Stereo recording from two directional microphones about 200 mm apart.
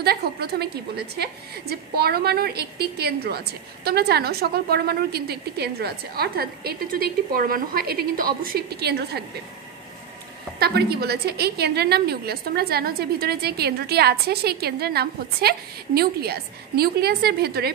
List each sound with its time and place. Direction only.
0.0 s a woman's voice: 50° right (ahead or behind)
10.6 s a woman's voice: 50° right (ahead or behind)